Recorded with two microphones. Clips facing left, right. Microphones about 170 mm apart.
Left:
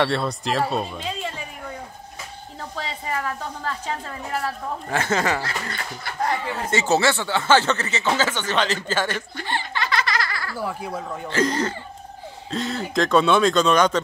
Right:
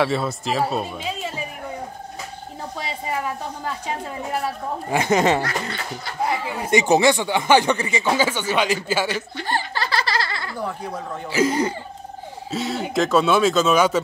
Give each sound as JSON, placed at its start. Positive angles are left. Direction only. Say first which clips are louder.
{"t": 0.0, "sound": "speech", "louder": "right 1 dB", "side_deg": -5}
{"t": 2.8, "sound": "speech", "louder": "right 1 dB", "side_deg": -15}
{"t": 9.5, "sound": "laughter", "louder": "right 2 dB", "side_deg": -40}
{"t": 10.6, "sound": "speech", "louder": "even", "side_deg": 5}
{"t": 11.2, "sound": "speech", "louder": "right 3 dB", "side_deg": -10}